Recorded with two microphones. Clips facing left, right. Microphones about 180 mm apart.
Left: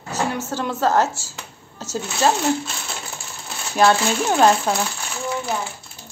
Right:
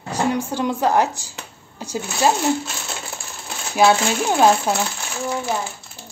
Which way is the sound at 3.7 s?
10° right (ahead or behind).